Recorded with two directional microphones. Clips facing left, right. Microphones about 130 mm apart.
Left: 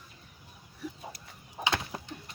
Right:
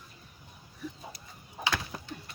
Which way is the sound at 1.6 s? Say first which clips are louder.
Left 1 dB; 25° left (ahead or behind).